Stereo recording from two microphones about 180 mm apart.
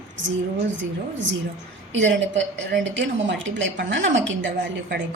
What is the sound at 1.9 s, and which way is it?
A woman's voice, 90° right.